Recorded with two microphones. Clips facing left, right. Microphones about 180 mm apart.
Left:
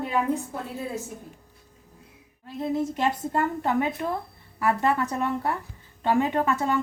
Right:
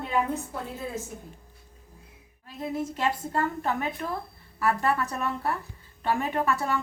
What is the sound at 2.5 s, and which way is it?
A woman's voice, 20° left (ahead or behind).